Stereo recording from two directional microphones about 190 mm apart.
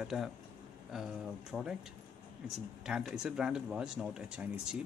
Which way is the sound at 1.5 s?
5° right (ahead or behind).